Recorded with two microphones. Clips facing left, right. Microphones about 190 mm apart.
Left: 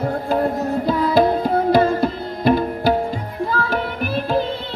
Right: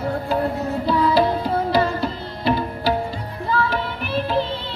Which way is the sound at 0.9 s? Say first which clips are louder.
Left 1 dB; 45° left (ahead or behind).